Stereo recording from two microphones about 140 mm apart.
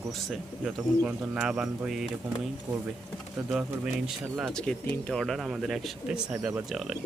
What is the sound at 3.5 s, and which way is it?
Speech, 5° right (ahead or behind).